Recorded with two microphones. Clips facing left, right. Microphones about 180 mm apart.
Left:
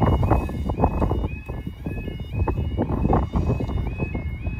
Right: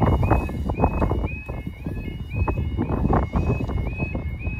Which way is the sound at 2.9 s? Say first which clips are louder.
Right 1 dB; centre (ahead or behind).